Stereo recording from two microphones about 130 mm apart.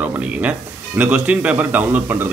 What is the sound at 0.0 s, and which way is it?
Speech, 10° right (ahead or behind).